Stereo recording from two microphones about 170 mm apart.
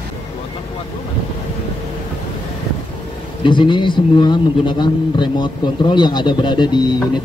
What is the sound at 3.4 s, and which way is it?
A man's voice, 30° left (ahead or behind).